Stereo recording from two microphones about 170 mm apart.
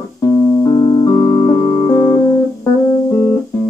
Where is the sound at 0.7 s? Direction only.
25° left (ahead or behind).